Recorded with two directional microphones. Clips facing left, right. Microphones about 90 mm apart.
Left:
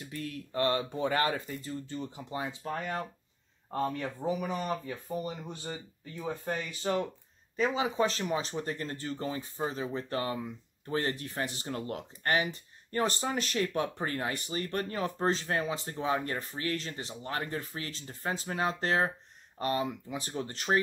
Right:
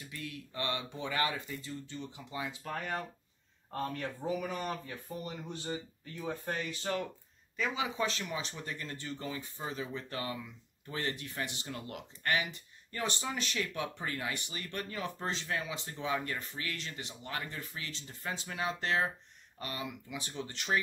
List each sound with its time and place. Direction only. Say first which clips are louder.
0.0 s speech: left 5 dB; 45° left (ahead or behind); by 7.1 s 20° left (ahead or behind)
7.5 s speech: left 6 dB; 35° left (ahead or behind)